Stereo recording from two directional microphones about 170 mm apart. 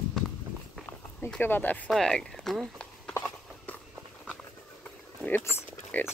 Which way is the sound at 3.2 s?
10° left (ahead or behind).